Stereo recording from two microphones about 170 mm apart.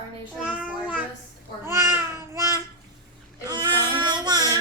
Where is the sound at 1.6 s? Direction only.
15° right (ahead or behind).